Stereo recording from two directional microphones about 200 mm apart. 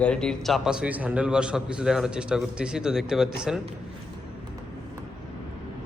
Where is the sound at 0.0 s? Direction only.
5° left (ahead or behind).